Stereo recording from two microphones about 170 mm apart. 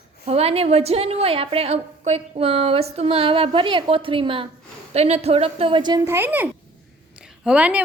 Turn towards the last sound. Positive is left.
turn(degrees=-10)  # may be behind; listen again after turning